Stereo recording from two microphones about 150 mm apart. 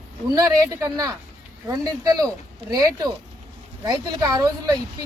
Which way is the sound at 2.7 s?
25° right (ahead or behind).